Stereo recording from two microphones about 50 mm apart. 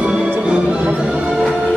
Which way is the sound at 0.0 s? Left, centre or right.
Centre.